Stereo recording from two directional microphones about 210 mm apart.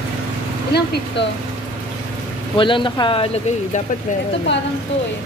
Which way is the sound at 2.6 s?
25° left (ahead or behind).